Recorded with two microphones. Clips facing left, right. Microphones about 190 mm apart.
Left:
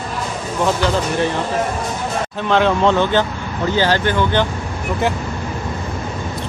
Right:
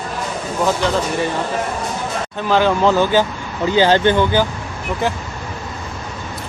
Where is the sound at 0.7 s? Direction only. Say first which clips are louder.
Even; centre (ahead or behind).